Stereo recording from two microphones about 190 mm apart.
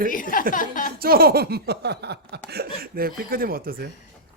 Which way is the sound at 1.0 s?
50° right (ahead or behind).